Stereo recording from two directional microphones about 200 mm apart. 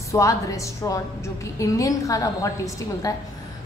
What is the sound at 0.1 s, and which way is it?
A woman's voice, 15° left (ahead or behind).